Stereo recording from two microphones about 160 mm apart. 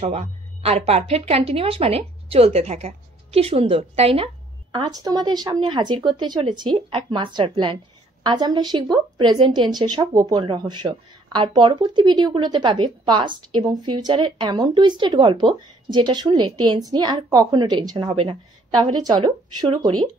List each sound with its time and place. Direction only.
0.0 s a woman's voice: 45° right (ahead or behind)
4.7 s speech: 25° right (ahead or behind)